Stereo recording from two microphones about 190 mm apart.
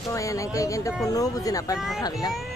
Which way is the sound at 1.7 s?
Centre (ahead or behind).